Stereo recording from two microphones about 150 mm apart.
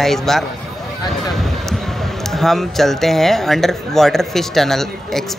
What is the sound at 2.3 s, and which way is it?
Speech, centre (ahead or behind).